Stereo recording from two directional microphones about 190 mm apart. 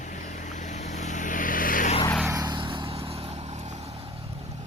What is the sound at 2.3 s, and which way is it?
Vehicle, 20° right (ahead or behind).